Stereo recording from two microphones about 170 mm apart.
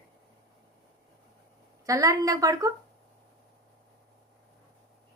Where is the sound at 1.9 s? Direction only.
20° right (ahead or behind).